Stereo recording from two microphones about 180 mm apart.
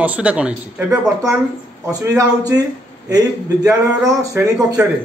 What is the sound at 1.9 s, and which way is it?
A man's voice, 15° right (ahead or behind).